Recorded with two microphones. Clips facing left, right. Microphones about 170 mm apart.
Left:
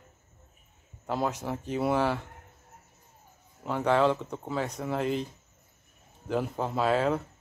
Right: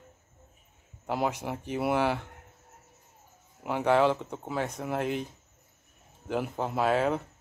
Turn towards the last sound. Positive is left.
turn(degrees=0)  # may be behind; listen again after turning